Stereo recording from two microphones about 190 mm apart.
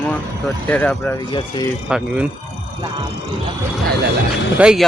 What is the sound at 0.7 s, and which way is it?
Speech, 5° left (ahead or behind).